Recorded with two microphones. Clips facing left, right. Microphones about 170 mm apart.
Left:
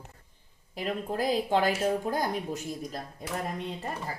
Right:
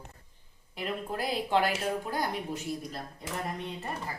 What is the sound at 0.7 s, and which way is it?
Speech, 40° left (ahead or behind).